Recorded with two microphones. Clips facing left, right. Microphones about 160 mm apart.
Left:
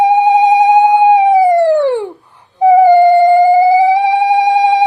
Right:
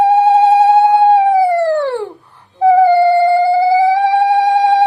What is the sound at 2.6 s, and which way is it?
Music, 15° left (ahead or behind).